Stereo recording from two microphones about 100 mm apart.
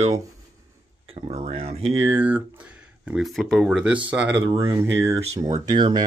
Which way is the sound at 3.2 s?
Centre (ahead or behind).